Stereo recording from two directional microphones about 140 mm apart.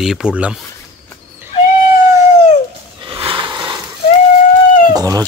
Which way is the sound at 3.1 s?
40° right (ahead or behind).